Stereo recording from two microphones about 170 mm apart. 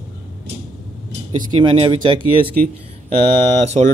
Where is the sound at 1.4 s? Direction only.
25° right (ahead or behind).